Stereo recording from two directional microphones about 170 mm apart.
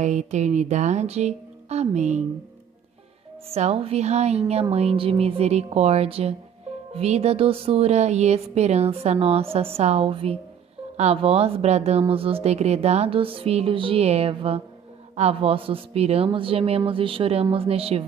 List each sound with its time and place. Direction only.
0.0 s speech: 40° right (ahead or behind)
3.4 s speech: 35° right (ahead or behind)